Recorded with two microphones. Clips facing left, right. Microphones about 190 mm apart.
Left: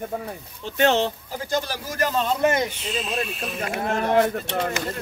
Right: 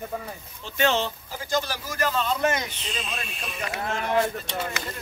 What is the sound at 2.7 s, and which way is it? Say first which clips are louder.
Speech: left 6 dB; 5° left (ahead or behind).